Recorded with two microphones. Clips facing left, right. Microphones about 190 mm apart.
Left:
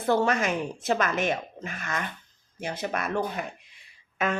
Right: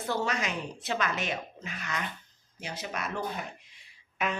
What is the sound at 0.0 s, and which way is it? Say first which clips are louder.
Speech: left 7 dB; 55° left (ahead or behind).